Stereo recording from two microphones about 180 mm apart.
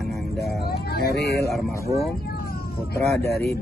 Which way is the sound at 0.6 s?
60° left (ahead or behind).